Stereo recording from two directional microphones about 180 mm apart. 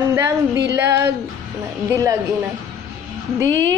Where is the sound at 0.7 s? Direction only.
15° right (ahead or behind).